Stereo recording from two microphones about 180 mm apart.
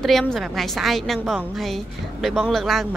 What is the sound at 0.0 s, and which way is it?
A woman's voice, centre (ahead or behind).